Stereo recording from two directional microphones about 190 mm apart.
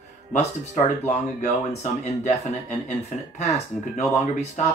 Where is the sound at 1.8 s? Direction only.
40° left (ahead or behind).